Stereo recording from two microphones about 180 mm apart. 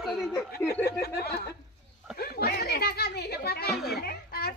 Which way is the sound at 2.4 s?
60° left (ahead or behind).